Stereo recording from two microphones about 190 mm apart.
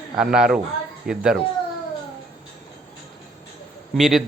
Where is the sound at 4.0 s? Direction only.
Centre (ahead or behind).